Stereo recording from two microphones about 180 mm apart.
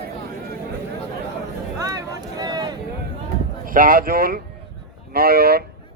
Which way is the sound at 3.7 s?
50° right (ahead or behind).